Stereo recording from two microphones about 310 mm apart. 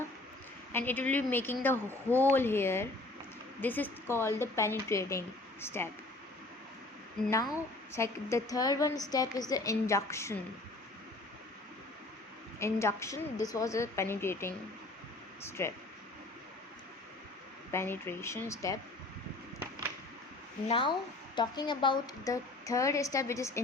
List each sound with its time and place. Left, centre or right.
0.7 s a woman's voice: centre
7.3 s a woman's voice: centre
12.5 s a woman's voice: centre
17.7 s a woman's voice: centre
20.7 s a woman's voice: centre